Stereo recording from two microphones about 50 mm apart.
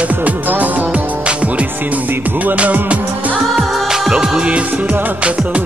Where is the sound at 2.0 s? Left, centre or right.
Right.